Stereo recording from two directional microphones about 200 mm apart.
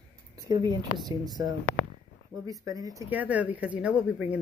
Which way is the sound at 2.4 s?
15° right (ahead or behind).